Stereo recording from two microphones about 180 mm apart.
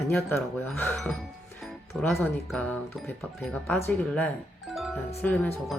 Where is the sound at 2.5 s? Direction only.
10° left (ahead or behind).